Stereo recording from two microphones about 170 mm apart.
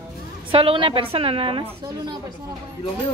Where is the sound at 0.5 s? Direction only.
30° right (ahead or behind).